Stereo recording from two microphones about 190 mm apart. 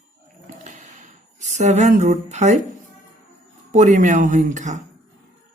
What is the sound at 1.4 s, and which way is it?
Speech, 35° right (ahead or behind).